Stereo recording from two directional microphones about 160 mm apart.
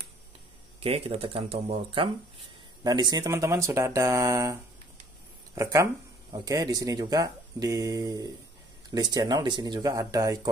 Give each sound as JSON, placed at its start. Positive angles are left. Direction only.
{"t": 0.7, "sound": "speech", "side_deg": -35}
{"t": 2.8, "sound": "speech", "side_deg": -25}